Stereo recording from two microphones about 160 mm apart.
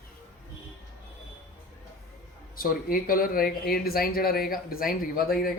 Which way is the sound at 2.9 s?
60° left (ahead or behind).